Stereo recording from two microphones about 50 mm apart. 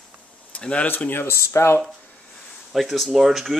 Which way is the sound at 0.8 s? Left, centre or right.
Left.